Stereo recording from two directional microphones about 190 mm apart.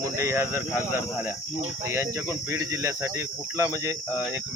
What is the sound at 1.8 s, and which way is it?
Speech, 15° right (ahead or behind).